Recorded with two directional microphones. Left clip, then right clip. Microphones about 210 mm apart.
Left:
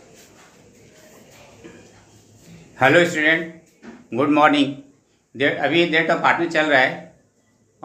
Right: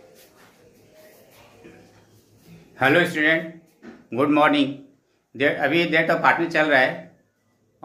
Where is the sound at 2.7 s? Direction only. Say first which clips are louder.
Left 3 dB; 5° left (ahead or behind).